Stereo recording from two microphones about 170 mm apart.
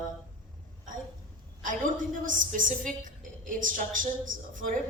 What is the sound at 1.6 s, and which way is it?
A woman's voice, 50° right (ahead or behind).